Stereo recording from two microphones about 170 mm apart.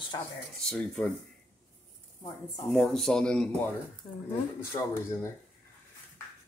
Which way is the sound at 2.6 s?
Centre (ahead or behind).